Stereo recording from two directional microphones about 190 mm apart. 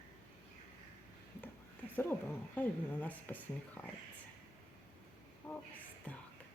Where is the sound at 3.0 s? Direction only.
10° left (ahead or behind).